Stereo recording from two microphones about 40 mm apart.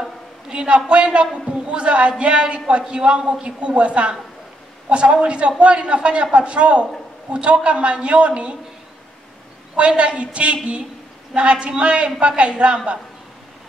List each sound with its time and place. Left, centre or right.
0.5 s a man's voice: right
9.8 s a man's voice: right